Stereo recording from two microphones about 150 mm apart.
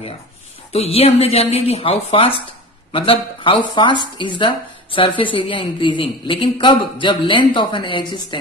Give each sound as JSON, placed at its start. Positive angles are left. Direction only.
{"t": 0.7, "sound": "speech", "side_deg": 40}